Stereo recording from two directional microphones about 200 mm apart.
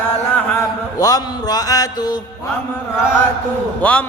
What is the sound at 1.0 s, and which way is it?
Music, 20° left (ahead or behind).